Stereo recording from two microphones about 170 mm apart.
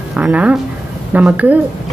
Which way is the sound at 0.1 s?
5° right (ahead or behind).